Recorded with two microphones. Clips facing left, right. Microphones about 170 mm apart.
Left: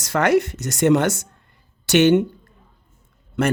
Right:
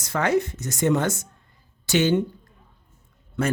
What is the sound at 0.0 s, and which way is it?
A woman's voice, 80° left.